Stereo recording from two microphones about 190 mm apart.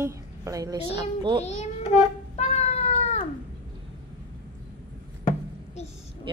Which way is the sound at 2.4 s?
35° left (ahead or behind).